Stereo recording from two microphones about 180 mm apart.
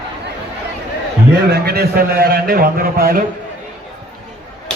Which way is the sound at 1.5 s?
60° right (ahead or behind).